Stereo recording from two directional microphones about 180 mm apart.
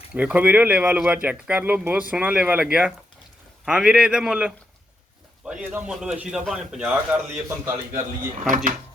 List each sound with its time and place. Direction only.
0.1 s a man's voice: 5° right (ahead or behind)
8.4 s speech: 45° right (ahead or behind)